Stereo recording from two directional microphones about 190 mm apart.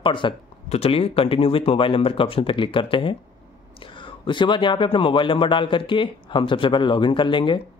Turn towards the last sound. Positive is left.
turn(degrees=25)  # may be behind; listen again after turning